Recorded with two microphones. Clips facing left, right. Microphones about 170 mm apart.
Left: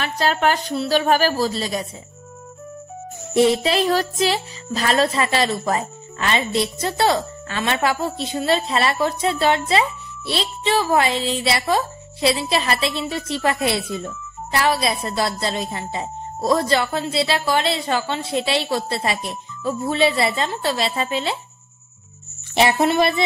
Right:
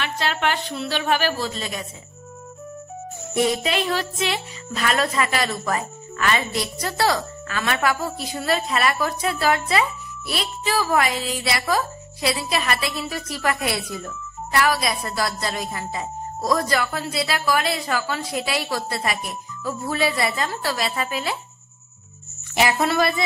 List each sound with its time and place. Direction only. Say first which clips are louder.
0.0 s a woman's voice: left 4 dB; 40° left (ahead or behind)
3.3 s speech: left 5 dB; 25° left (ahead or behind)
22.5 s speech: left 3 dB; 30° left (ahead or behind)